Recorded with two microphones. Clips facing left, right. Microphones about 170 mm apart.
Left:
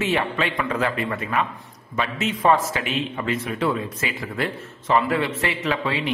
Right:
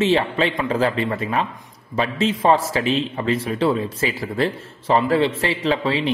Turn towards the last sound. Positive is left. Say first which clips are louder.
# right 4 dB
turn(degrees=-30)  # may be behind; listen again after turning